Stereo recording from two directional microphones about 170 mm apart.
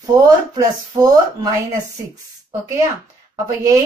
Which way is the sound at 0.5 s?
20° right (ahead or behind).